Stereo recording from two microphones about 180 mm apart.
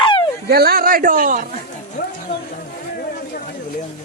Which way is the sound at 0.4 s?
60° right (ahead or behind).